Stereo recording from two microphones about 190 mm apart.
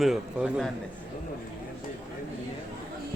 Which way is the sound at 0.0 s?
5° right (ahead or behind).